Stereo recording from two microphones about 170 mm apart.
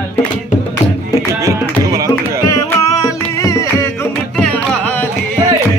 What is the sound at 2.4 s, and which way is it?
Music, 20° left (ahead or behind).